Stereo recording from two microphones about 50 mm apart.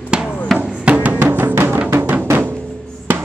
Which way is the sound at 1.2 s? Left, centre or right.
Right.